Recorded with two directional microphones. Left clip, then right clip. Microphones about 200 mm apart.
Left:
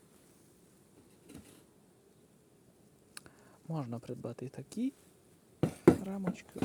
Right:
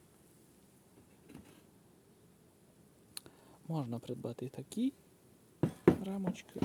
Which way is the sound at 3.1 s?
5° right (ahead or behind).